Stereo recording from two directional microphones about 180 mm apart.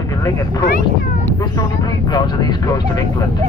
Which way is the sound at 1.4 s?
20° left (ahead or behind).